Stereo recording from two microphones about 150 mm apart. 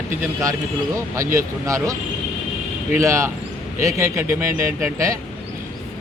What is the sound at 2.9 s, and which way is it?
Speech, 20° right (ahead or behind).